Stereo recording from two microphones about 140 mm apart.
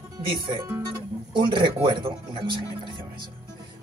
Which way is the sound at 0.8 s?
35° right (ahead or behind).